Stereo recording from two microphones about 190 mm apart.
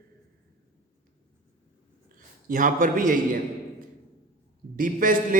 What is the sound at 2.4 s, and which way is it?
Speech, 45° right (ahead or behind).